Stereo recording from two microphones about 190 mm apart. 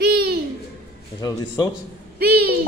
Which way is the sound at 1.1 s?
20° left (ahead or behind).